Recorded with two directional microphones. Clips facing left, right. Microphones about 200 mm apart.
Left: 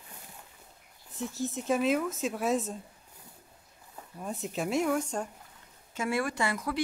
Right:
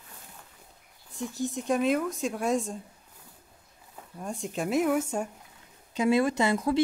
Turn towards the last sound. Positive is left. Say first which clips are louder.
# right 6 dB
turn(degrees=-25)  # may be behind; listen again after turning